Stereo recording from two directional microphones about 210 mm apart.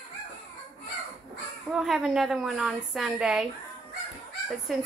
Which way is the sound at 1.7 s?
Centre (ahead or behind).